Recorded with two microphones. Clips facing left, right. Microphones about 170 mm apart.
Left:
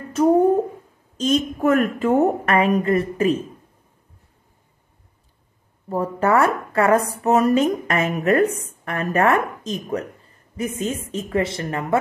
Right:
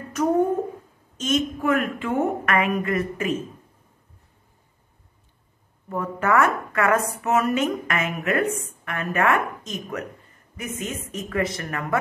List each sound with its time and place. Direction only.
0.1 s speech: 30° left (ahead or behind)
5.9 s a woman's voice: 35° left (ahead or behind)